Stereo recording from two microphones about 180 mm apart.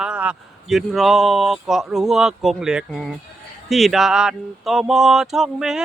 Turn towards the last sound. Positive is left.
turn(degrees=-5)  # may be behind; listen again after turning